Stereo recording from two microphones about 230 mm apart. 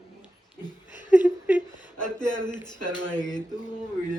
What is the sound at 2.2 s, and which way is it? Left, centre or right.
A man's voice, centre.